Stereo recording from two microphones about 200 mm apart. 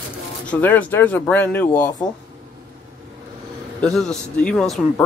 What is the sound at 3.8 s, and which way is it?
A man's voice, 5° left (ahead or behind).